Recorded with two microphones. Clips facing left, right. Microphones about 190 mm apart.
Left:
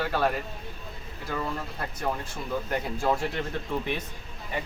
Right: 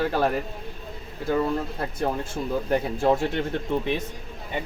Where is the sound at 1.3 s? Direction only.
25° right (ahead or behind).